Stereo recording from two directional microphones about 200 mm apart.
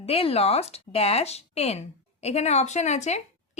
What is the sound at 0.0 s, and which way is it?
Speech, 30° left (ahead or behind).